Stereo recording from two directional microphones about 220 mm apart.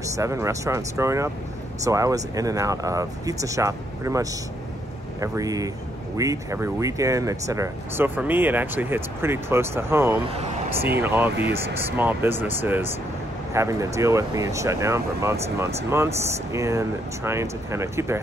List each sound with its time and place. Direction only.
0.0 s speech: 15° right (ahead or behind)